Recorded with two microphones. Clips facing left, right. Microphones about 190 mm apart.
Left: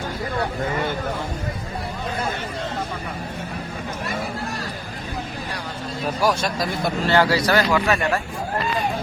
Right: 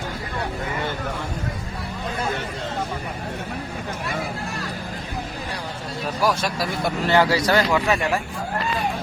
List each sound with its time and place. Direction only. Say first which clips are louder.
6.6 s speech: left 1 dB; 15° right (ahead or behind)